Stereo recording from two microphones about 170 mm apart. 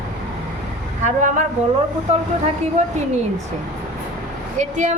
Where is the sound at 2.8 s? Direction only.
40° right (ahead or behind).